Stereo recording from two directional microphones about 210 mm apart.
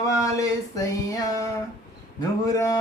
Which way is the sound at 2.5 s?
15° left (ahead or behind).